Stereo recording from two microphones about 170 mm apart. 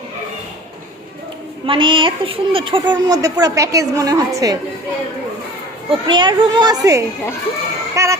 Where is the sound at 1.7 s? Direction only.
30° right (ahead or behind).